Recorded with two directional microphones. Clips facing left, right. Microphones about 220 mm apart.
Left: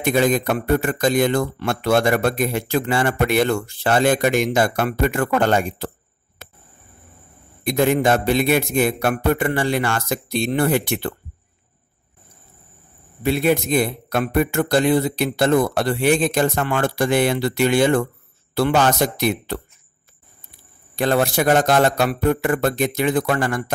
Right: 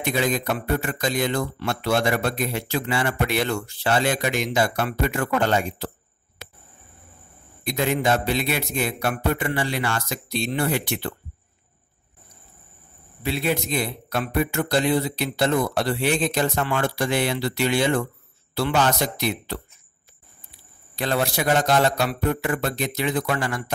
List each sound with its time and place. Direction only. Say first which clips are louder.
0.0 s speech: left 6 dB; 50° left (ahead or behind)
7.6 s speech: left 5 dB; 50° left (ahead or behind)
13.2 s speech: left 6 dB; 50° left (ahead or behind)
20.9 s speech: left 6 dB; 50° left (ahead or behind)